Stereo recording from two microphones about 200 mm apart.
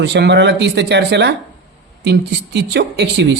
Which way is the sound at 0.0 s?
60° right (ahead or behind).